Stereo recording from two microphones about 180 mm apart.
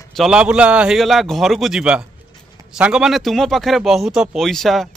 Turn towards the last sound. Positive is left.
turn(degrees=0)  # may be behind; listen again after turning